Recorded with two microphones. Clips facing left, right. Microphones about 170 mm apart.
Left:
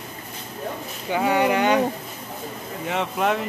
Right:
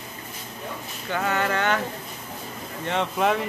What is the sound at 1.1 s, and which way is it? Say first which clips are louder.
Speech: left 5 dB; 15° left (ahead or behind).